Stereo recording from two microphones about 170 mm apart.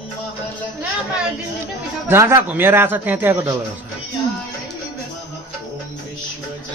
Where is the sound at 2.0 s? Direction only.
15° right (ahead or behind).